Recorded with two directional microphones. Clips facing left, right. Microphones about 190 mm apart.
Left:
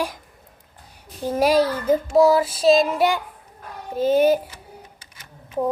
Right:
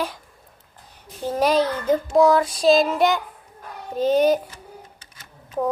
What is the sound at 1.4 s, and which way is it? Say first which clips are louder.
A child's voice: left 2 dB; 10° left (ahead or behind).